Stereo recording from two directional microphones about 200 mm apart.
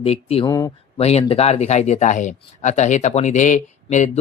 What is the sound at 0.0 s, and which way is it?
Speech, 30° left (ahead or behind).